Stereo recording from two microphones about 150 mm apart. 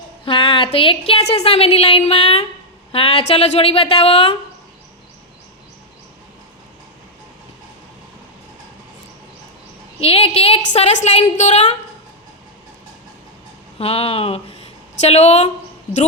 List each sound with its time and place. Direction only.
0.3 s speech: 35° left (ahead or behind)
10.0 s a woman's voice: 40° left (ahead or behind)
13.7 s a woman's voice: 40° left (ahead or behind)